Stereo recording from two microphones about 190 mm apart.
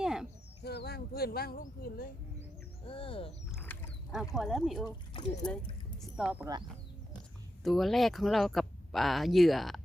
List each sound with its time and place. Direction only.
0.0 s bird: 5° right (ahead or behind)
0.6 s a sound: 60° left (ahead or behind)
2.8 s speech: 30° left (ahead or behind)
3.5 s a sound: centre (ahead or behind)
4.4 s speech: centre (ahead or behind)
4.9 s speech: 25° left (ahead or behind)
6.0 s speech: 5° right (ahead or behind)
7.6 s speech: centre (ahead or behind)